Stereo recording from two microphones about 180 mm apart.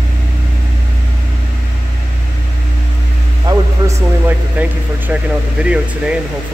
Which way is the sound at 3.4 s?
15° right (ahead or behind).